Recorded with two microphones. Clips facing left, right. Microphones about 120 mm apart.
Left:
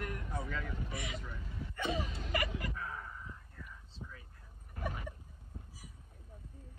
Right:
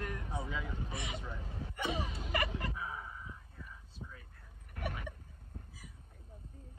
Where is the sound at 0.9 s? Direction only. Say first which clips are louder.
Even; 25° right (ahead or behind).